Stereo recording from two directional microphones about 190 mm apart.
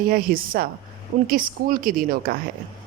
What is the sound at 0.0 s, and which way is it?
Speech, 50° right (ahead or behind).